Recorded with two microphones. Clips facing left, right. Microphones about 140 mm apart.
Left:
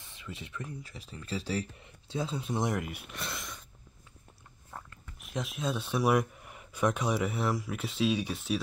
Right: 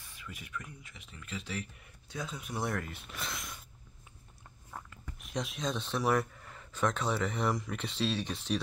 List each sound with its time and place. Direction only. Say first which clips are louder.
0.0 s speech: left 4 dB; 25° left (ahead or behind)
3.2 s gasp: even; centre (ahead or behind)
4.7 s speech: even; centre (ahead or behind)